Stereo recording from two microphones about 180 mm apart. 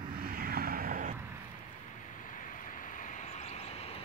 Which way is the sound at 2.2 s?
45° left (ahead or behind).